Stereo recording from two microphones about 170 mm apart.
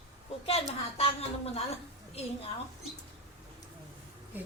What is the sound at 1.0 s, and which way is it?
Speech, 35° left (ahead or behind).